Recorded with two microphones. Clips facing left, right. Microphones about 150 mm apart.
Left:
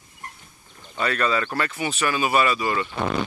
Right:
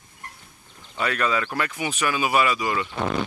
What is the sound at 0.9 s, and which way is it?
Speech, 10° right (ahead or behind).